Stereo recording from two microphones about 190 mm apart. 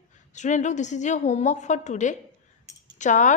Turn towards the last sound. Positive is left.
turn(degrees=40)  # may be behind; listen again after turning